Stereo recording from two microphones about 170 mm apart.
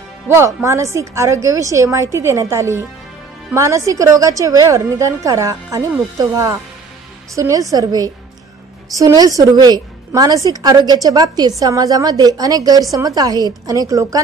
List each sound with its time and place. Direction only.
0.3 s a woman's voice: 15° right (ahead or behind)